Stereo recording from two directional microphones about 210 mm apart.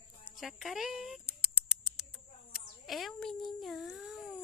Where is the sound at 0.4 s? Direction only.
Centre (ahead or behind).